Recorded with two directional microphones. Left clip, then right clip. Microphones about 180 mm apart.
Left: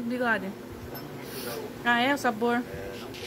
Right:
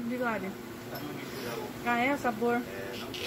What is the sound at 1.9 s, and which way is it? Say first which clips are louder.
Speech: left 4 dB; 15° left (ahead or behind).